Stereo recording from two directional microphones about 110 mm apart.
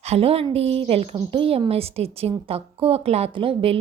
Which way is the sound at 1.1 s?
50° right (ahead or behind).